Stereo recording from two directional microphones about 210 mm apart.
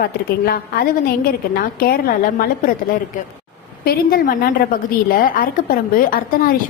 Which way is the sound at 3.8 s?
45° left (ahead or behind).